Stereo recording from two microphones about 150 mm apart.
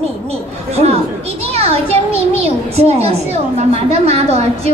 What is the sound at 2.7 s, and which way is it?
A woman's voice, 45° right (ahead or behind).